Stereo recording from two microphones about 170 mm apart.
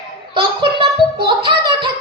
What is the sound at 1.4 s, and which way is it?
Child singing, 30° right (ahead or behind).